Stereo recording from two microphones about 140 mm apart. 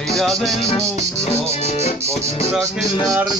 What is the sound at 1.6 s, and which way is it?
Music, 50° left (ahead or behind).